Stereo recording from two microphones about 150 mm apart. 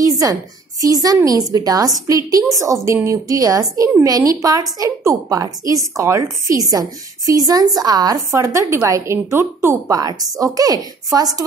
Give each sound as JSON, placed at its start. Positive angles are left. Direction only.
{"t": 0.0, "sound": "a woman's voice", "side_deg": -25}